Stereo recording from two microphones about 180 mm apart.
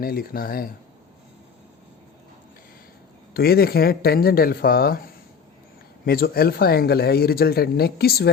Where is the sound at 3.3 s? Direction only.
55° left (ahead or behind).